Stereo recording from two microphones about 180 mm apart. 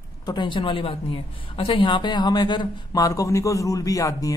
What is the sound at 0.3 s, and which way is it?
Speech, 25° left (ahead or behind).